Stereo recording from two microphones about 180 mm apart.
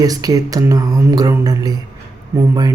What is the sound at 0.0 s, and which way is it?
Speech, 20° right (ahead or behind).